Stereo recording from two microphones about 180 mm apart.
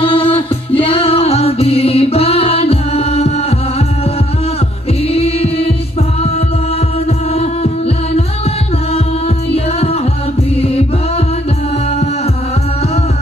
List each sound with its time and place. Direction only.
0.0 s music: 30° left (ahead or behind)
5.1 s music: 35° left (ahead or behind)